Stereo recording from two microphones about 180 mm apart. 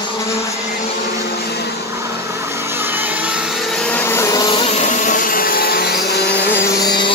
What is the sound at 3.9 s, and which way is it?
Vehicle, 10° left (ahead or behind).